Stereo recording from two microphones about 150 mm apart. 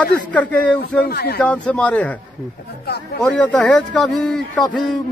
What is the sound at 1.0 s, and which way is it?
Speech, 90° left.